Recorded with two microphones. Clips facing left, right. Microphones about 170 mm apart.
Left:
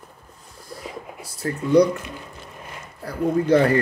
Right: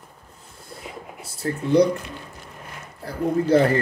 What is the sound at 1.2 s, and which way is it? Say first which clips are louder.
Speech: even; 25° right (ahead or behind).